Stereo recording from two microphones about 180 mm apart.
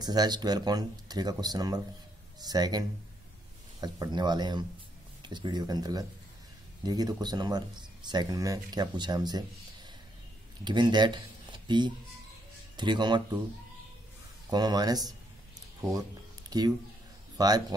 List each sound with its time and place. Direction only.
0.0 s speech: 20° right (ahead or behind)
10.6 s speech: 25° right (ahead or behind)
14.5 s speech: 20° right (ahead or behind)
16.4 s a sound: 20° right (ahead or behind)
17.4 s speech: 20° right (ahead or behind)